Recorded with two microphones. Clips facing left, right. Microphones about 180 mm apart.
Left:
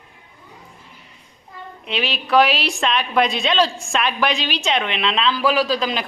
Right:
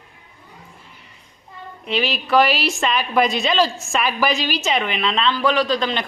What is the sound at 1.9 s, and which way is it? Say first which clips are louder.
A woman's voice: right 1 dB; centre (ahead or behind).